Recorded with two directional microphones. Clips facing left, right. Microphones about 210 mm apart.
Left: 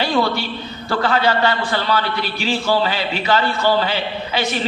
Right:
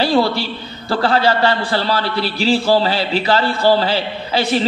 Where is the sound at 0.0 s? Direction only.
35° right (ahead or behind).